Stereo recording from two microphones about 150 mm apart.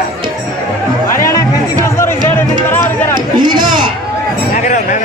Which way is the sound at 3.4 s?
30° right (ahead or behind).